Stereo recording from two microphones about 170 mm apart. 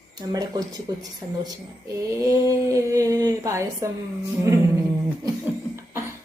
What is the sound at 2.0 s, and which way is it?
Speech, 20° right (ahead or behind).